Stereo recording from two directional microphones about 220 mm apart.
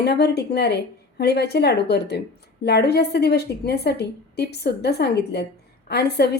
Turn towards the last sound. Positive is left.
turn(degrees=50)  # may be behind; listen again after turning